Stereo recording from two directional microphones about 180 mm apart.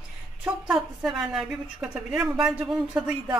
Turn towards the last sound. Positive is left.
turn(degrees=-5)  # may be behind; listen again after turning